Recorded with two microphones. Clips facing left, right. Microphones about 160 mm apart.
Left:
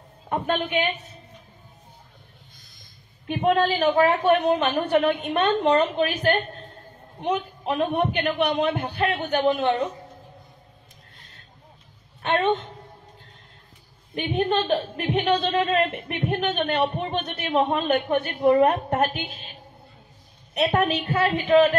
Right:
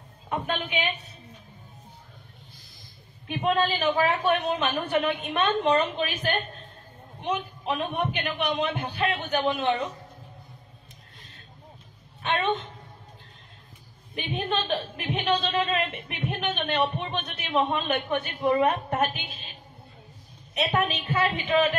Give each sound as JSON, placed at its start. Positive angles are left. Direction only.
{"t": 0.3, "sound": "speech", "side_deg": 50}
{"t": 3.3, "sound": "speech", "side_deg": 55}
{"t": 12.2, "sound": "a sound", "side_deg": 45}
{"t": 14.1, "sound": "speech", "side_deg": 50}
{"t": 20.7, "sound": "speech", "side_deg": 45}